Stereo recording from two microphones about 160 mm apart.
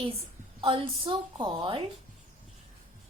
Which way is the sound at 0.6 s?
35° right (ahead or behind).